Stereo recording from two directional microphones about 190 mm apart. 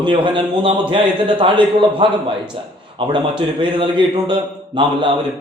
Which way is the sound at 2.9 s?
25° right (ahead or behind).